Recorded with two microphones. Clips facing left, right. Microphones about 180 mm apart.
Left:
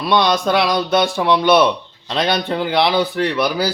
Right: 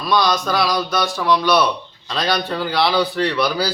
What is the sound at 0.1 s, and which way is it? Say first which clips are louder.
Speech: left 2 dB; 25° left (ahead or behind).